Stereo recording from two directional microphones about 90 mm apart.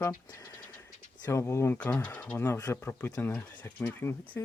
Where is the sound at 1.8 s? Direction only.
15° left (ahead or behind).